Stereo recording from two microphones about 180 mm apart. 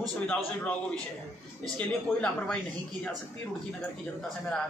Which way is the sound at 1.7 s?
5° left (ahead or behind).